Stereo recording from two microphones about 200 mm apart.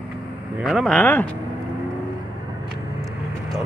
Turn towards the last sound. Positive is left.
turn(degrees=0)  # may be behind; listen again after turning